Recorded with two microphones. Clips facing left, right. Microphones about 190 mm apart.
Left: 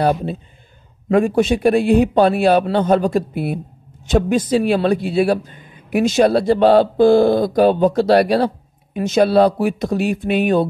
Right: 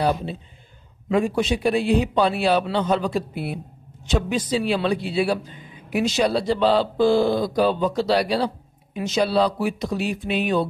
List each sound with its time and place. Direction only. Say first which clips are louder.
0.0 s a man's voice: left 5 dB; 50° left (ahead or behind)